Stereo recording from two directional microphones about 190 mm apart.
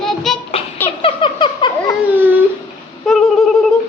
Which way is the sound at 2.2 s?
10° right (ahead or behind).